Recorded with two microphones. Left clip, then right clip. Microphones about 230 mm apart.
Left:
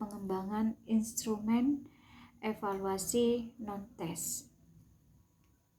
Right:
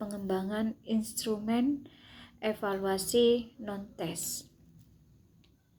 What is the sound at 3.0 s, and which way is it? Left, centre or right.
Speech, centre.